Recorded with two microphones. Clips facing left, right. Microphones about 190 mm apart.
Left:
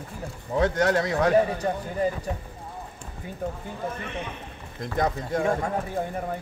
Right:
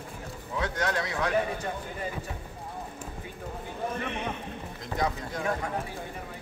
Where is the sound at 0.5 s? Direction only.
40° left (ahead or behind).